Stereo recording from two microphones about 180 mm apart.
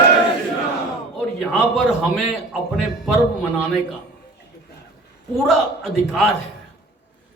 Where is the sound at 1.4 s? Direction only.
Centre (ahead or behind).